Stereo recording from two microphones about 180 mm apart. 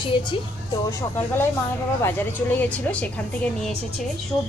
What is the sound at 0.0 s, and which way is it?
Speech, 25° left (ahead or behind).